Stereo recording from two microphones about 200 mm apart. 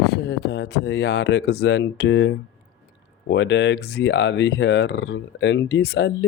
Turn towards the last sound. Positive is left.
turn(degrees=55)  # may be behind; listen again after turning